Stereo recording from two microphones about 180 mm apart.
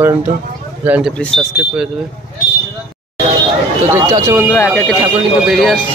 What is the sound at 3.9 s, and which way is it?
Speech, 15° right (ahead or behind).